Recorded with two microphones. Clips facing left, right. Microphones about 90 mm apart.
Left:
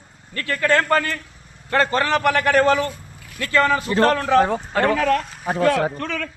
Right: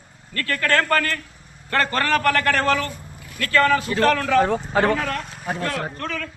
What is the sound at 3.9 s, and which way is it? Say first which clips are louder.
Speech: left 2 dB; 35° left (ahead or behind).